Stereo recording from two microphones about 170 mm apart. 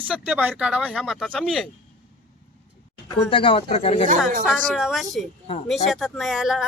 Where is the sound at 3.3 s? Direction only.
30° left (ahead or behind).